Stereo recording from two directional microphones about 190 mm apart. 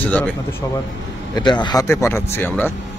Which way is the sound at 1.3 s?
25° left (ahead or behind).